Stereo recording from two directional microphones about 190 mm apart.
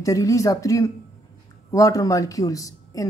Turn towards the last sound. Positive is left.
turn(degrees=20)  # may be behind; listen again after turning